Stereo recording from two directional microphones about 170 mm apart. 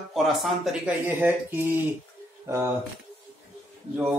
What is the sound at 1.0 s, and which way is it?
Speech, 10° right (ahead or behind).